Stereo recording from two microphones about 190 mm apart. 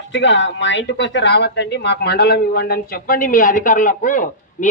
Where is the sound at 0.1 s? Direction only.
70° left (ahead or behind).